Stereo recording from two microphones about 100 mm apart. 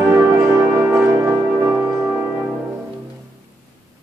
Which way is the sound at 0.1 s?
25° right (ahead or behind).